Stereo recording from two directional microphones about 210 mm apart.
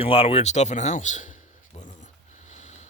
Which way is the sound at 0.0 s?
25° left (ahead or behind).